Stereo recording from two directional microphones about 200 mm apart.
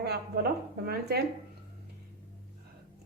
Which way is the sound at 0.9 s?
50° right (ahead or behind).